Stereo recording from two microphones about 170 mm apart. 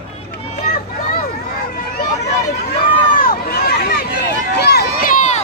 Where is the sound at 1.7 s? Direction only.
60° left (ahead or behind).